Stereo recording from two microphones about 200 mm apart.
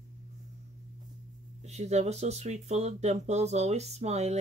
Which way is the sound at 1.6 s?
35° right (ahead or behind).